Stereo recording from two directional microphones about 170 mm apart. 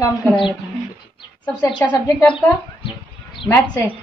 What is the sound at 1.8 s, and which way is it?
Speech, 15° left (ahead or behind).